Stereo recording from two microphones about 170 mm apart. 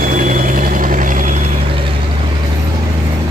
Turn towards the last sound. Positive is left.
turn(degrees=-50)  # may be behind; listen again after turning